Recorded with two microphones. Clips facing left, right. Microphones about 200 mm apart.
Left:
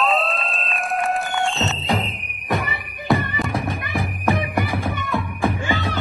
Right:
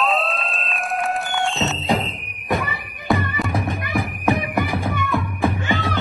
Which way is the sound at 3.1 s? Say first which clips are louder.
Left 1 dB; centre (ahead or behind).